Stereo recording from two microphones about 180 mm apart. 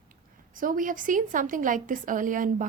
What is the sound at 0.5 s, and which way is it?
A woman's voice, 50° right (ahead or behind).